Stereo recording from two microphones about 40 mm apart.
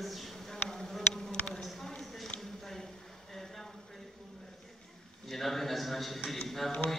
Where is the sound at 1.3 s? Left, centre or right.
Left.